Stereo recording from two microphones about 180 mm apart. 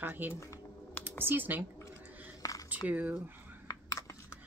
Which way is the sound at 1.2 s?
10° right (ahead or behind).